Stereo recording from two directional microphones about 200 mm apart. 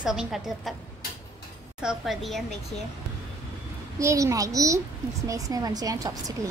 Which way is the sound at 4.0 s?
15° right (ahead or behind).